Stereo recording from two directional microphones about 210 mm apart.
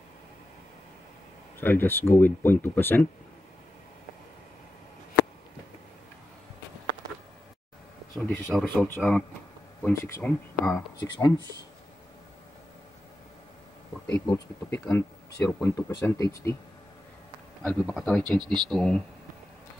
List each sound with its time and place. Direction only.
1.6 s speech: 10° left (ahead or behind)
8.1 s speech: centre (ahead or behind); by 11.3 s 20° left (ahead or behind)
14.2 s speech: 10° left (ahead or behind)
17.6 s speech: 5° left (ahead or behind)
18.4 s speech: 20° right (ahead or behind)
18.7 s speech: 5° left (ahead or behind)